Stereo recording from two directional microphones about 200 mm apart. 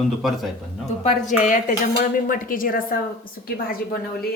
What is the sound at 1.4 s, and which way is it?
A woman's voice, 40° left (ahead or behind).